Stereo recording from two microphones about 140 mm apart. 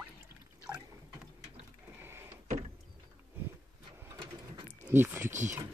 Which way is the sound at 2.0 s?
15° right (ahead or behind).